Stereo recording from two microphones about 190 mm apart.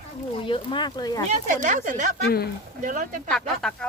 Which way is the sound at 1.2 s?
40° right (ahead or behind).